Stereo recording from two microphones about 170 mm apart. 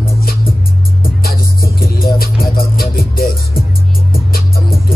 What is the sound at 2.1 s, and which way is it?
Music, 60° left (ahead or behind).